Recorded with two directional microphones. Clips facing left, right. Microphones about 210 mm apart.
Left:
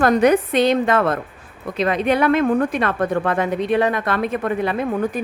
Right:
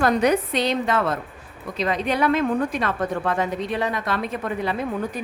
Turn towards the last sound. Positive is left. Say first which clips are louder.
# left 5 dB
turn(degrees=55)  # may be behind; listen again after turning